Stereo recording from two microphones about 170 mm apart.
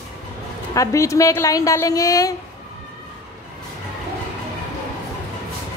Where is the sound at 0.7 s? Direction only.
20° left (ahead or behind).